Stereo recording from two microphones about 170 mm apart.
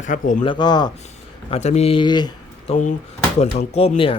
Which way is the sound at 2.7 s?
50° left (ahead or behind).